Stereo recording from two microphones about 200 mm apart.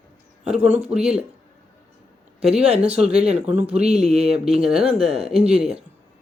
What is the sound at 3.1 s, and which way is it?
Speech, 30° right (ahead or behind).